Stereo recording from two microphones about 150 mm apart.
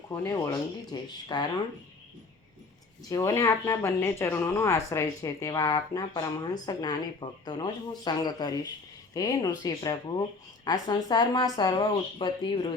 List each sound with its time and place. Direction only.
0.1 s speech: 20° left (ahead or behind)
3.1 s a woman's voice: 25° left (ahead or behind)